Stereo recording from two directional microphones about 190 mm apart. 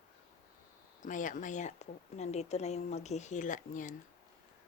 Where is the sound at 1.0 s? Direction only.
40° left (ahead or behind).